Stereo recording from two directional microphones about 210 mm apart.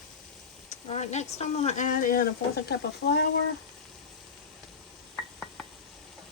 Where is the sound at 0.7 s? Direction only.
30° left (ahead or behind); by 2.8 s 50° left (ahead or behind).